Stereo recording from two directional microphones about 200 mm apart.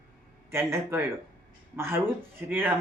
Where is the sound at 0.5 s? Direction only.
10° right (ahead or behind).